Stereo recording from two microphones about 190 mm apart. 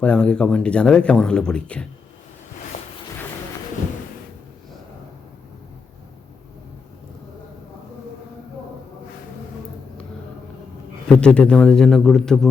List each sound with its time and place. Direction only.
0.0 s speech: 5° left (ahead or behind)
2.7 s a sound: 35° left (ahead or behind)
11.1 s speech: 5° left (ahead or behind)